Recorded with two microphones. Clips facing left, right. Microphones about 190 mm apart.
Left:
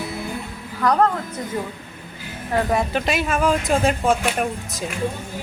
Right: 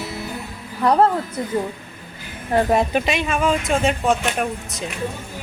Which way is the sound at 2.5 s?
25° right (ahead or behind).